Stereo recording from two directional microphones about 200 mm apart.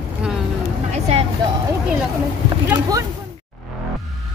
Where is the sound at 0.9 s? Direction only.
30° right (ahead or behind).